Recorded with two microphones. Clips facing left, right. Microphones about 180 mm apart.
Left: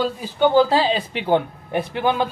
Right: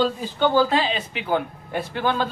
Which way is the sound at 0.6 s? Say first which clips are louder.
Left 3 dB; 35° left (ahead or behind).